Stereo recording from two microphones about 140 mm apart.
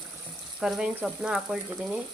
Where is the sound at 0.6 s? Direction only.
5° right (ahead or behind).